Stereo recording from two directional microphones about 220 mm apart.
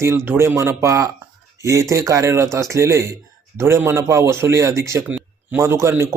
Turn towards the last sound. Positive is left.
turn(degrees=-10)  # may be behind; listen again after turning